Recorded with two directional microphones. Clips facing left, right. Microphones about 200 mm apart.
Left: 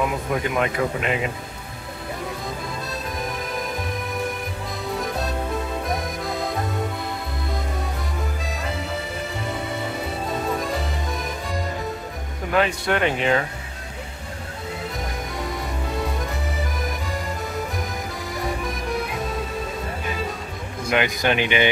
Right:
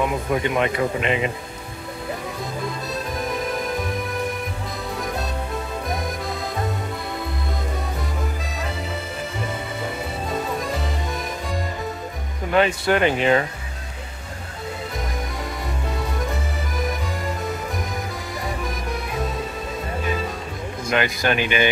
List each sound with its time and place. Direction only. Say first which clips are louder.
0.0 s speech: right 2 dB; centre (ahead or behind)
2.9 s music: right 3 dB; centre (ahead or behind)
4.9 s music: left 2 dB; centre (ahead or behind)
8.5 s accordion: left 1 dB; centre (ahead or behind)
10.6 s music: even; centre (ahead or behind)
12.5 s speech: right 3 dB; centre (ahead or behind)
16.0 s music: right 1 dB; centre (ahead or behind)
20.9 s speech: even; 15° left (ahead or behind)